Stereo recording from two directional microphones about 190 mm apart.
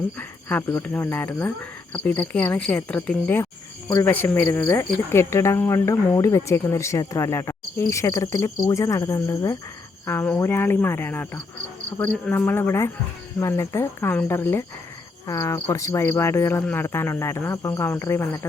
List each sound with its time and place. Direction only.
0.2 s speech: 10° left (ahead or behind)